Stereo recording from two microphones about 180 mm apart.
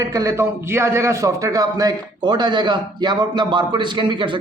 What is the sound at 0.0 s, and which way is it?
Speech, 20° right (ahead or behind).